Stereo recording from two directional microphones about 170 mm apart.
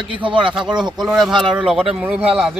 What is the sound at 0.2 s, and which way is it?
Speech, 30° right (ahead or behind).